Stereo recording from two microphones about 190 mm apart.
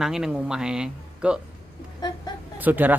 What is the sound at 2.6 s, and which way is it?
Speech, 10° right (ahead or behind).